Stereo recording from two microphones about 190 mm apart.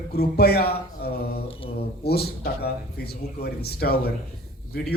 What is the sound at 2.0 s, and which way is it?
A man's voice, 55° left (ahead or behind).